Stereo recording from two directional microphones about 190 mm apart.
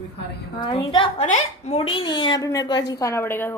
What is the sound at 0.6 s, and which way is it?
A woman's voice, 25° left (ahead or behind).